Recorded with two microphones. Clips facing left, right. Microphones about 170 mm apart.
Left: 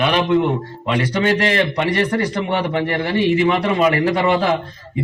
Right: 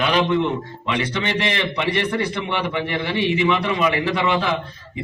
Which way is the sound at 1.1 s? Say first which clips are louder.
Left 6 dB; 45° left (ahead or behind).